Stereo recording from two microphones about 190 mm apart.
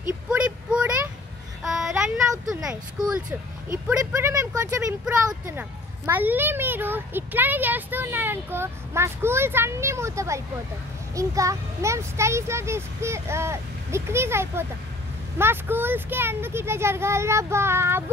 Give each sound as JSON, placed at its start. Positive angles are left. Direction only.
{"t": 0.3, "sound": "a sound", "side_deg": -5}
{"t": 2.6, "sound": "speech", "side_deg": -5}
{"t": 4.0, "sound": "a child's voice", "side_deg": -15}